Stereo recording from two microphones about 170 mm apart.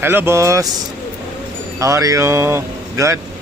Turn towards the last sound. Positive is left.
turn(degrees=-15)  # may be behind; listen again after turning